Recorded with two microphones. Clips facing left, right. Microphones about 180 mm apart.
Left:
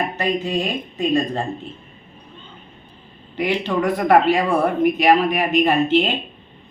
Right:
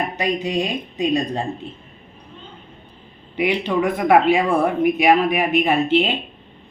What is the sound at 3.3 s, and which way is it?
Speech, 15° right (ahead or behind).